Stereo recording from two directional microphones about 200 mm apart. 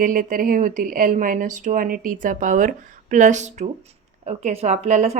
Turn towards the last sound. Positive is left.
turn(degrees=-35)  # may be behind; listen again after turning